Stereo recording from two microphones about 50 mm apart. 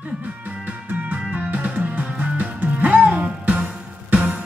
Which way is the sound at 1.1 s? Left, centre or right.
Right.